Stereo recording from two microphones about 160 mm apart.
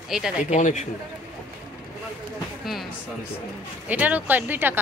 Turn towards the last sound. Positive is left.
turn(degrees=-10)  # may be behind; listen again after turning